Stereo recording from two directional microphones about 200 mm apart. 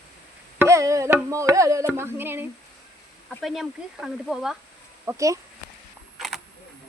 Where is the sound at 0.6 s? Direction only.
15° right (ahead or behind).